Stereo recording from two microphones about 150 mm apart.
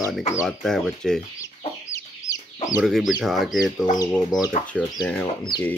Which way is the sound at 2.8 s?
Centre (ahead or behind).